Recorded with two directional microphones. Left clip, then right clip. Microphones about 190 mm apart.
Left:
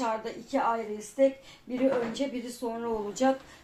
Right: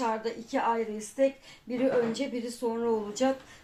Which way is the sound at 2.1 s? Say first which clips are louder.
Even; 25° right (ahead or behind).